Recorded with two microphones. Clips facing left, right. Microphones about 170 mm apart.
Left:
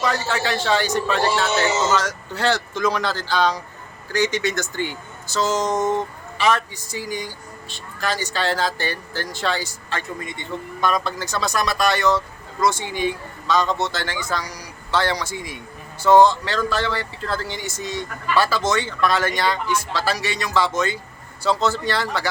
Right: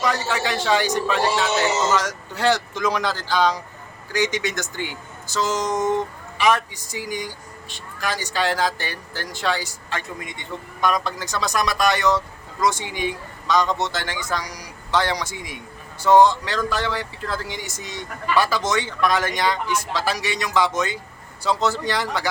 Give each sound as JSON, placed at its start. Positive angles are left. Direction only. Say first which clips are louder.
{"t": 0.0, "sound": "speech", "louder": "even", "side_deg": -15}